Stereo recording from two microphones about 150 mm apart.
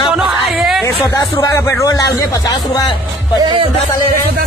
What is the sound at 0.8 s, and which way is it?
Speech, 20° left (ahead or behind).